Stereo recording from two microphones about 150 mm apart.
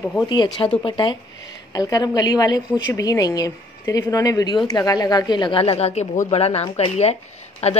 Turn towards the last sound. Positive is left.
turn(degrees=45)  # may be behind; listen again after turning